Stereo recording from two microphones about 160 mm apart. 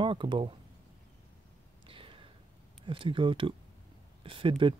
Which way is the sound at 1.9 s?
35° right (ahead or behind).